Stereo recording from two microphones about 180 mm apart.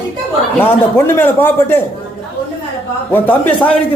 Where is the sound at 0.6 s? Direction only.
15° left (ahead or behind).